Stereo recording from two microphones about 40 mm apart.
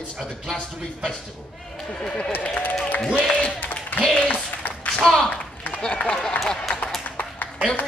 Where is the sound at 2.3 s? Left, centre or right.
Left.